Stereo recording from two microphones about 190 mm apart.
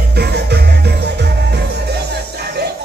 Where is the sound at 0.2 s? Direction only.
60° right (ahead or behind).